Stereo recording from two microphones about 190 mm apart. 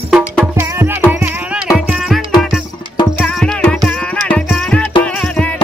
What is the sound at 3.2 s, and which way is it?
Music, 5° left (ahead or behind).